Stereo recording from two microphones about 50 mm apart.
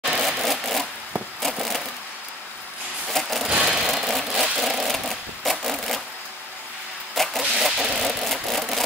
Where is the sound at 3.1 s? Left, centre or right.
Centre.